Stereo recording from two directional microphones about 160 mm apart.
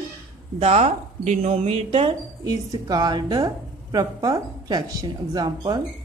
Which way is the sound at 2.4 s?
20° right (ahead or behind).